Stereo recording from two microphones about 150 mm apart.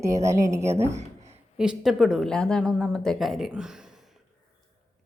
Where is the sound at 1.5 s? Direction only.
5° right (ahead or behind).